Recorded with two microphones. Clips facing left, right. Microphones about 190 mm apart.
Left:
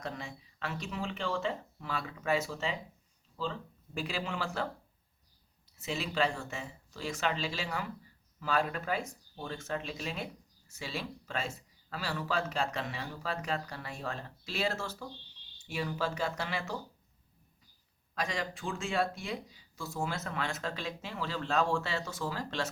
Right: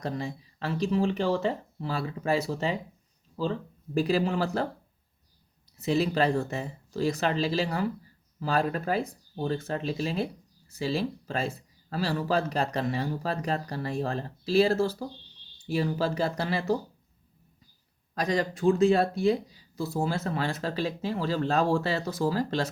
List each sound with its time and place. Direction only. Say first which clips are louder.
0.0 s speech: right 8 dB; 35° right (ahead or behind)
3.9 s speech: right 11 dB; 40° right (ahead or behind)
5.8 s speech: right 8 dB; 40° right (ahead or behind)
18.1 s speech: right 8 dB; 40° right (ahead or behind)